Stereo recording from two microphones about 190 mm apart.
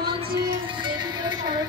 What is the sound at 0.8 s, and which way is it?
Music, 25° right (ahead or behind).